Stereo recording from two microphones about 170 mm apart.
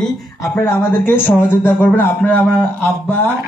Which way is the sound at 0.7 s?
10° left (ahead or behind).